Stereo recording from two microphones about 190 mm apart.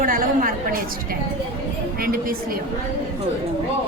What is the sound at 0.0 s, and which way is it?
Speech, 45° right (ahead or behind).